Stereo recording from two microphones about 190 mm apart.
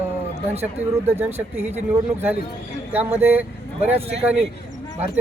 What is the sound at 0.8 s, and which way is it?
Speech, 10° right (ahead or behind).